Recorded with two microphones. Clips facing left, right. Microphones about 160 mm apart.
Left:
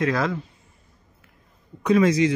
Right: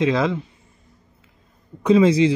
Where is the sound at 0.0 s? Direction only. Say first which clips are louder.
Right 4 dB; 20° right (ahead or behind).